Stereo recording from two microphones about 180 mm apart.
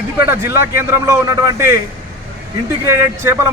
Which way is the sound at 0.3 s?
15° right (ahead or behind).